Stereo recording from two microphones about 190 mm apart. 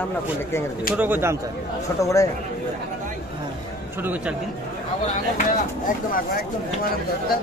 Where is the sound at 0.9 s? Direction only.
10° right (ahead or behind).